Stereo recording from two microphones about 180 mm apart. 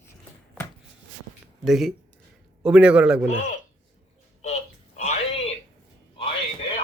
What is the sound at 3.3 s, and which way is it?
Speech, 45° left (ahead or behind).